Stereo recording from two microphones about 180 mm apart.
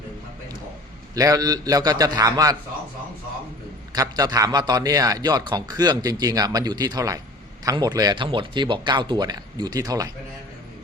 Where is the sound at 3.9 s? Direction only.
20° right (ahead or behind).